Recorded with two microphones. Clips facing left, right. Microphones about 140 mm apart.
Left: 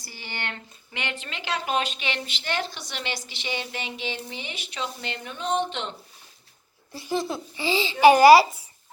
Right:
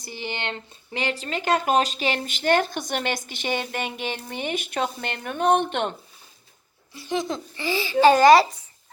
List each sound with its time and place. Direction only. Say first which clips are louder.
0.0 s speech: right 5 dB; 20° right (ahead or behind)
0.9 s a woman's voice: right 7 dB; 35° right (ahead or behind); by 5.9 s 55° right (ahead or behind)
7.1 s a child's voice: right 1 dB; 5° left (ahead or behind)